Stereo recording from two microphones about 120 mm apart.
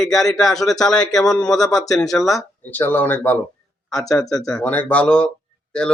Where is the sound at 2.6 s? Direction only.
15° left (ahead or behind).